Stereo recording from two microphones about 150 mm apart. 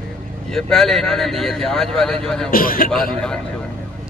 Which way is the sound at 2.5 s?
70° left (ahead or behind).